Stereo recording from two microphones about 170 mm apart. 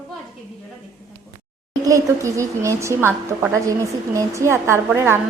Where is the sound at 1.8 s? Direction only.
20° right (ahead or behind).